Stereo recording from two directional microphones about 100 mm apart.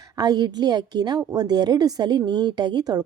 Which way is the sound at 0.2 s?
40° right (ahead or behind).